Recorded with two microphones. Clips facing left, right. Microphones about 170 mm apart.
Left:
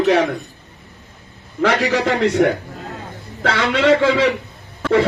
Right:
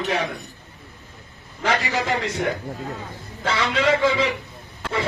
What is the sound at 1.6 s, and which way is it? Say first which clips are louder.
A man's voice: left 6 dB; 80° left.